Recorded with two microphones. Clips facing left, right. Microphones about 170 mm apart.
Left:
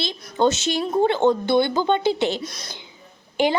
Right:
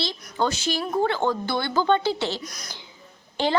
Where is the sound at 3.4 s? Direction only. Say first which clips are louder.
Left 4 dB; 15° left (ahead or behind).